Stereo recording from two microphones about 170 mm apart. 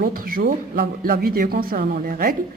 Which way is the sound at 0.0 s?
55° right (ahead or behind).